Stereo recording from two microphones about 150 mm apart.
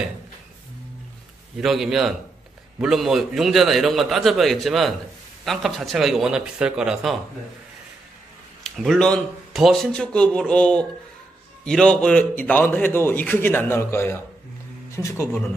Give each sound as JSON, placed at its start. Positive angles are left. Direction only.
{"t": 1.6, "sound": "a man's voice", "side_deg": 0}
{"t": 8.6, "sound": "a man's voice", "side_deg": 0}